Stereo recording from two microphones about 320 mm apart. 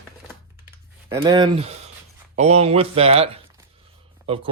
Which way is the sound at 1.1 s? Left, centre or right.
Centre.